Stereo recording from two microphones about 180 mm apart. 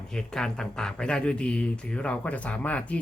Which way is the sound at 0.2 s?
5° left (ahead or behind).